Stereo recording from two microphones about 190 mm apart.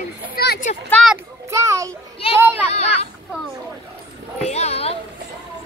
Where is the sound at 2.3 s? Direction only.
15° right (ahead or behind).